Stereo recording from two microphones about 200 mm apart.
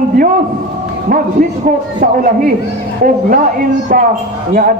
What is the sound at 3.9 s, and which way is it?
Speech, 45° right (ahead or behind).